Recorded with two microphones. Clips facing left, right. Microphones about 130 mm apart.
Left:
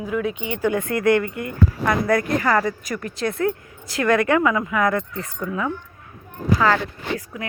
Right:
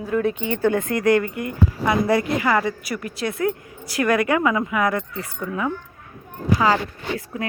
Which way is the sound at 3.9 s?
15° right (ahead or behind).